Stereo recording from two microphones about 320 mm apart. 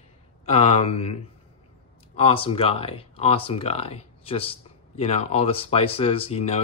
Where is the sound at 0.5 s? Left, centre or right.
Centre.